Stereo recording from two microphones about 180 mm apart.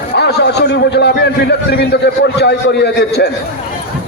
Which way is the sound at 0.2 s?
65° left (ahead or behind).